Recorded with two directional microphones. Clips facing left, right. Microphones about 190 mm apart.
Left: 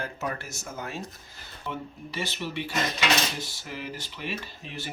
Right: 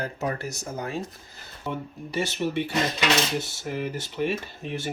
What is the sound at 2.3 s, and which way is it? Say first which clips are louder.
Speech: right 7 dB; 50° right (ahead or behind).